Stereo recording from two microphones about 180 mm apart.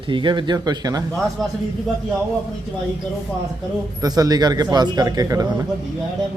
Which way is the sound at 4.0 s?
20° right (ahead or behind).